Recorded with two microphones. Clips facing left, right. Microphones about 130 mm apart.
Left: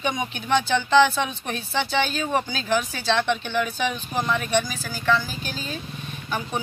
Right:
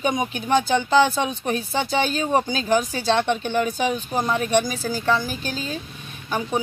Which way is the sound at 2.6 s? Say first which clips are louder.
Right 3 dB; 45° right (ahead or behind).